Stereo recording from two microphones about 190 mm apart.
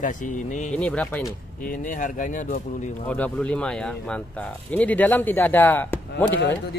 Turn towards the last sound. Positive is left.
turn(degrees=10)  # may be behind; listen again after turning